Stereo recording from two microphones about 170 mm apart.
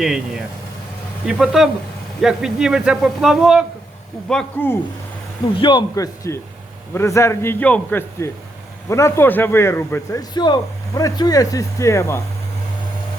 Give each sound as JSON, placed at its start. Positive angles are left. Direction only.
{"t": 0.0, "sound": "a man's voice", "side_deg": -5}
{"t": 5.5, "sound": "a man's voice", "side_deg": 30}